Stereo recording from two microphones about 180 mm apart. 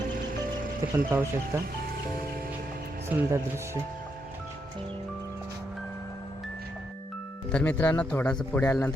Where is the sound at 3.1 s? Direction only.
10° right (ahead or behind).